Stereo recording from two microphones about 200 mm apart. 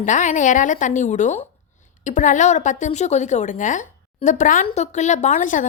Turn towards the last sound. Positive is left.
turn(degrees=40)  # may be behind; listen again after turning